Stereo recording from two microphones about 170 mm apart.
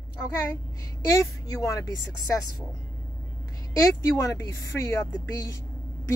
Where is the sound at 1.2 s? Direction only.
20° left (ahead or behind).